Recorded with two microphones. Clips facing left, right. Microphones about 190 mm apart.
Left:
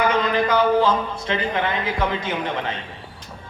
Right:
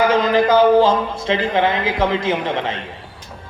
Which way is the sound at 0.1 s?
90° right.